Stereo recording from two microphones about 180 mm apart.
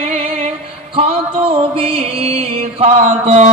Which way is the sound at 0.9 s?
30° right (ahead or behind).